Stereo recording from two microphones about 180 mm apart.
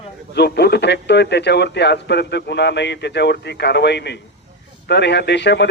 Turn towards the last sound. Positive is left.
turn(degrees=70)  # may be behind; listen again after turning